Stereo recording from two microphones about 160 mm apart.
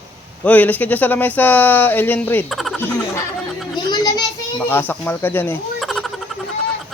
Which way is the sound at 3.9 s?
25° left (ahead or behind).